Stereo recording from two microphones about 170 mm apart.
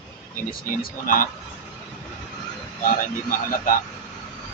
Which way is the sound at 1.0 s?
55° left (ahead or behind).